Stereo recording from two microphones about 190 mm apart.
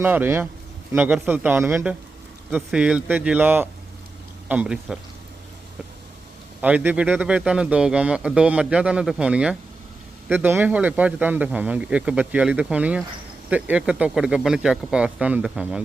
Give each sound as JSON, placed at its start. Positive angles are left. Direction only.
{"t": 0.0, "sound": "a man's voice", "side_deg": -10}
{"t": 6.6, "sound": "a man's voice", "side_deg": -10}